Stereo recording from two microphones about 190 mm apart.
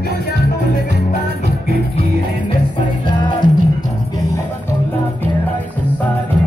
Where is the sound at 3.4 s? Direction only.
45° right (ahead or behind).